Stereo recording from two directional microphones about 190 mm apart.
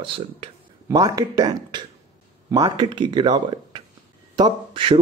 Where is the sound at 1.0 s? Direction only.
20° right (ahead or behind).